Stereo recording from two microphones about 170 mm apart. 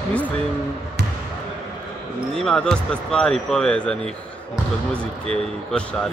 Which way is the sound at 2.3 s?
5° left (ahead or behind).